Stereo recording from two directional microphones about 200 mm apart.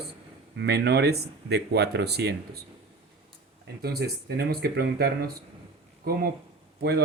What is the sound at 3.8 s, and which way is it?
Speech, 50° right (ahead or behind).